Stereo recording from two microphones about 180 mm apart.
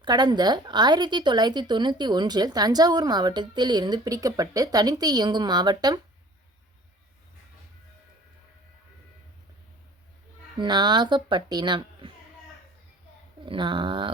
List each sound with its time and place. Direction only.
0.0 s a woman's voice: 25° right (ahead or behind)
10.6 s a woman's voice: 25° right (ahead or behind)
13.4 s a woman's voice: 25° right (ahead or behind)